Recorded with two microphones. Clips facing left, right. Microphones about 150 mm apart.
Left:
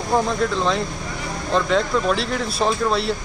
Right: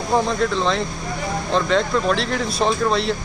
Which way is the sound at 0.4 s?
5° left (ahead or behind).